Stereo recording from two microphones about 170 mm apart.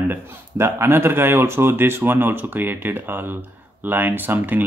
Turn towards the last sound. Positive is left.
turn(degrees=-10)  # may be behind; listen again after turning